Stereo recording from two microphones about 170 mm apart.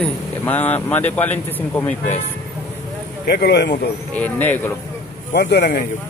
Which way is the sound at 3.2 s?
75° left (ahead or behind).